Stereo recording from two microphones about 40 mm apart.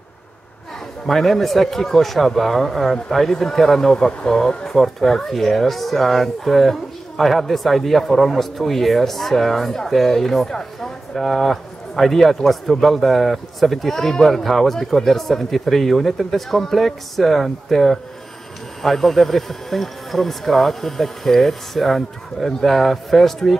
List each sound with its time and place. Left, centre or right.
1.0 s speech: centre
4.3 s speech: centre
4.6 s speech: centre